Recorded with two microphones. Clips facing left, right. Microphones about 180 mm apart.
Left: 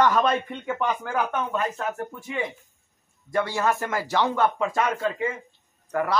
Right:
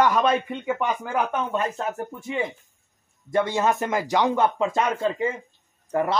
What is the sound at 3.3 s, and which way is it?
Speech, 20° right (ahead or behind).